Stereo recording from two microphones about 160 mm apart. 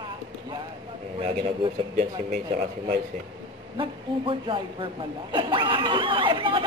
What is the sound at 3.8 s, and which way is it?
Speech, 30° right (ahead or behind).